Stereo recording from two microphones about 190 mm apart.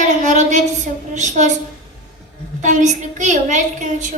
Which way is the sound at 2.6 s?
40° right (ahead or behind).